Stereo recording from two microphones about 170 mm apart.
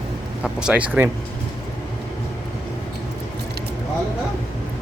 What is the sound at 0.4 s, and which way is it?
Speech, 5° right (ahead or behind).